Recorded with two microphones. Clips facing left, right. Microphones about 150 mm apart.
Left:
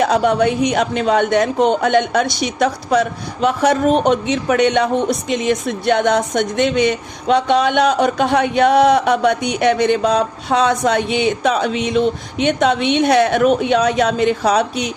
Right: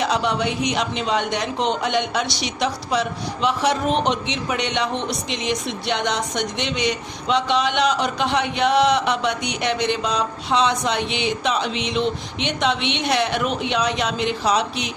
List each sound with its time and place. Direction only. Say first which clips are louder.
0.0 s a woman's voice: left 7 dB; 50° left (ahead or behind)